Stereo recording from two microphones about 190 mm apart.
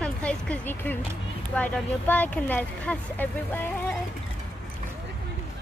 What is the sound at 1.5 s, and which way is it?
Speech, 10° left (ahead or behind).